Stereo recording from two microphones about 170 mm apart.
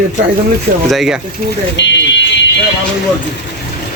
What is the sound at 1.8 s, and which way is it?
Speech, 90° left.